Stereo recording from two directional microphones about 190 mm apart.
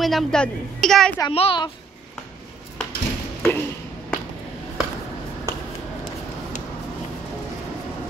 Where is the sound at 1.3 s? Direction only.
30° left (ahead or behind).